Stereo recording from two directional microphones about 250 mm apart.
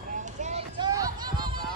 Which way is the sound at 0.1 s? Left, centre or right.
Right.